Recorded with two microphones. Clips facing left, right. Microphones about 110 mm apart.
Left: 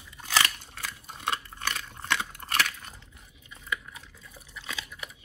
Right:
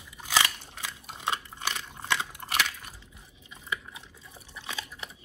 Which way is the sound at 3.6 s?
25° right (ahead or behind).